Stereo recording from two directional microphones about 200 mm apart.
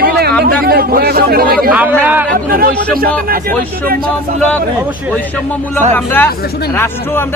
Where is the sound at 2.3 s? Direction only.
45° right (ahead or behind).